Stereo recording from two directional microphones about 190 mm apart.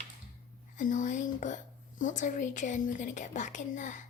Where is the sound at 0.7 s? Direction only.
40° left (ahead or behind).